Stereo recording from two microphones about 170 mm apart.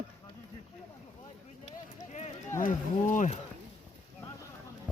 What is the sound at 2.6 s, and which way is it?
Speech, 50° left (ahead or behind).